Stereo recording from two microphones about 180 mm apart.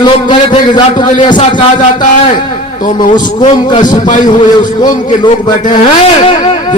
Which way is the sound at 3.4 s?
30° left (ahead or behind).